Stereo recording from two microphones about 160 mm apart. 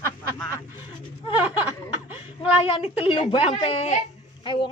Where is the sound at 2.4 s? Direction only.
10° right (ahead or behind).